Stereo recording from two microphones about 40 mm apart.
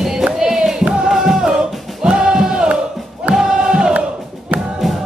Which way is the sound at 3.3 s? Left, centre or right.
Right.